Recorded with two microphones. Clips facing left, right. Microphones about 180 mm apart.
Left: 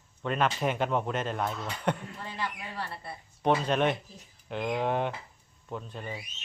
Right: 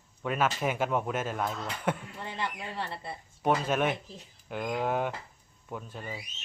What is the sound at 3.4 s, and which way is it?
Speech, 5° right (ahead or behind).